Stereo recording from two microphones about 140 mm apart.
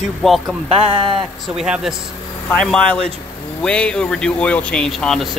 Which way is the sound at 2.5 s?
10° left (ahead or behind).